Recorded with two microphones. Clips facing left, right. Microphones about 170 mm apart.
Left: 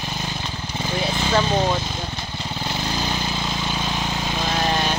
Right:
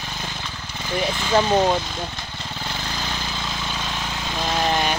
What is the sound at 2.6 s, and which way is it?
Vehicle, 25° left (ahead or behind).